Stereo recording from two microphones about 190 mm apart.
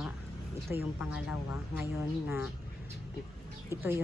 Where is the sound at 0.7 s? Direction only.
10° right (ahead or behind).